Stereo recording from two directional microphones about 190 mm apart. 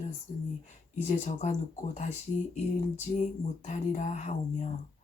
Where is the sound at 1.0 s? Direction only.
40° left (ahead or behind).